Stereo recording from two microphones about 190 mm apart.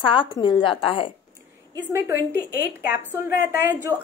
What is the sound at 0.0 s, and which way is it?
A woman's voice, 25° left (ahead or behind).